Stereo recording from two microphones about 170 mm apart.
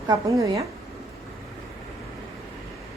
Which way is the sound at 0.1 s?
20° right (ahead or behind).